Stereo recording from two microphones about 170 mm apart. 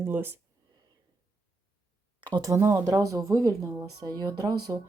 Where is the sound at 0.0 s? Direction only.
10° right (ahead or behind).